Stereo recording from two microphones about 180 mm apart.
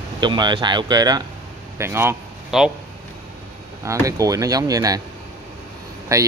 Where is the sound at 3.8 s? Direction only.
20° right (ahead or behind).